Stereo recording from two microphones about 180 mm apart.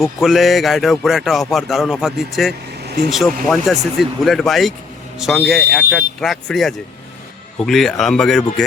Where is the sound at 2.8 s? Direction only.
60° right (ahead or behind).